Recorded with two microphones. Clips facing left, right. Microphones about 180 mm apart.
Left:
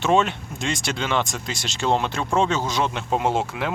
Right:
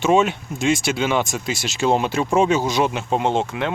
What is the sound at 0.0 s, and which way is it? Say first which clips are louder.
Speech: right 3 dB; 5° right (ahead or behind).